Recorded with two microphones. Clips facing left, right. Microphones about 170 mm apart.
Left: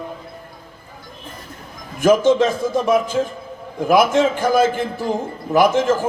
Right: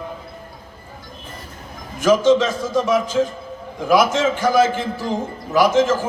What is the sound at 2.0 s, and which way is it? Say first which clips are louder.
A man's voice: left 1 dB; 55° left (ahead or behind).